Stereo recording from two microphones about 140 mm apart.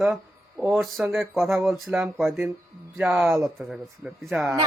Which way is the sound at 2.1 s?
Centre (ahead or behind).